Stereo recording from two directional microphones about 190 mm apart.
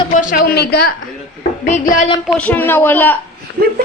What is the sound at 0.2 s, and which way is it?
Speech, 45° left (ahead or behind).